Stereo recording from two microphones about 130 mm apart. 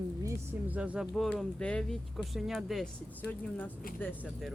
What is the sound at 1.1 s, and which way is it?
Speech, centre (ahead or behind).